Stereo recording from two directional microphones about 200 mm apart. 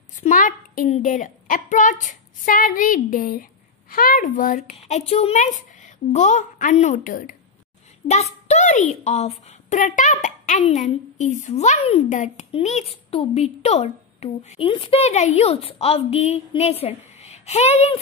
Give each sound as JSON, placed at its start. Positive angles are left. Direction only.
{"t": 0.1, "sound": "a woman's voice", "side_deg": 40}